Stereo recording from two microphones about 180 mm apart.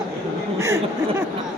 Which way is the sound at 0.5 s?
15° right (ahead or behind).